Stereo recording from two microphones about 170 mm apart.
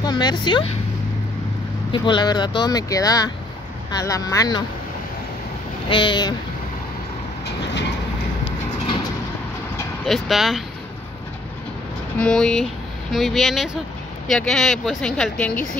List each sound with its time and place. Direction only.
0.0 s speech: 25° left (ahead or behind)
1.9 s speech: 25° left (ahead or behind)
5.9 s speech: 30° left (ahead or behind)
10.0 s speech: centre (ahead or behind)
12.2 s speech: 5° left (ahead or behind)